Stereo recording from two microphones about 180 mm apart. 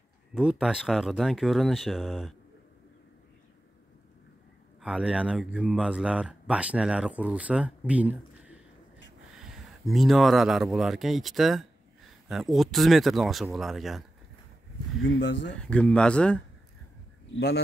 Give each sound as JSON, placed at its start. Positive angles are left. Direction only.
{"t": 0.3, "sound": "speech", "side_deg": -5}
{"t": 4.8, "sound": "speech", "side_deg": -5}
{"t": 15.0, "sound": "speech", "side_deg": 90}
{"t": 15.6, "sound": "speech", "side_deg": 5}